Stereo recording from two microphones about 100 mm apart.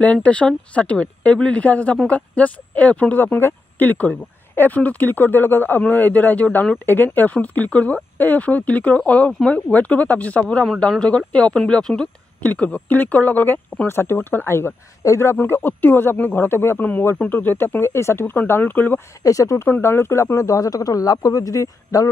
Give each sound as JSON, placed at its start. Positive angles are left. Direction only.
{"t": 0.0, "sound": "speech", "side_deg": 10}
{"t": 19.2, "sound": "speech", "side_deg": 35}